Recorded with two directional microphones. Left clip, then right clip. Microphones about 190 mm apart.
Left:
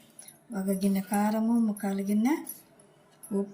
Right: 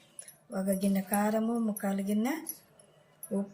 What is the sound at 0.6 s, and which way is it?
A woman's voice, 50° right (ahead or behind).